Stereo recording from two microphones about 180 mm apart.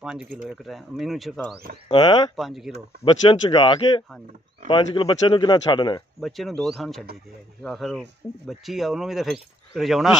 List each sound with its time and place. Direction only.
0.0 s speech: 5° right (ahead or behind)
1.9 s speech: 25° left (ahead or behind)
2.3 s speech: centre (ahead or behind)
3.1 s speech: 30° left (ahead or behind)
6.2 s speech: centre (ahead or behind)